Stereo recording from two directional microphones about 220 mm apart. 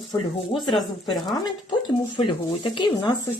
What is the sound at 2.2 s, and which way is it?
Speech, 25° left (ahead or behind).